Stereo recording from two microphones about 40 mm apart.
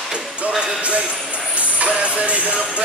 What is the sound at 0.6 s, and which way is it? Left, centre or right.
Basketball bounce, right.